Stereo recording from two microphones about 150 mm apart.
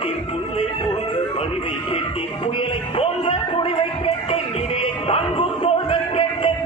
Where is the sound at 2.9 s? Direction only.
35° left (ahead or behind).